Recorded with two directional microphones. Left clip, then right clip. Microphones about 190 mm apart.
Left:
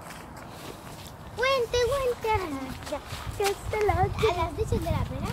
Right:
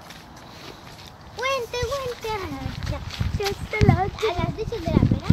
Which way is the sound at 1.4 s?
55° right (ahead or behind).